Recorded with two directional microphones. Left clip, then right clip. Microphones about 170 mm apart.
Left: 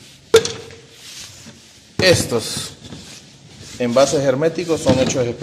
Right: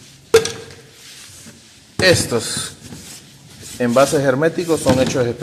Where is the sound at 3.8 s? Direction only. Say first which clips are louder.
Right 1 dB; 10° right (ahead or behind).